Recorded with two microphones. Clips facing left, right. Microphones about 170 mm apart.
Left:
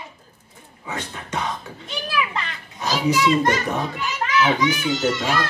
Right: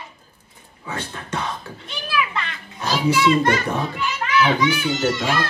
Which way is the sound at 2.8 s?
15° left (ahead or behind).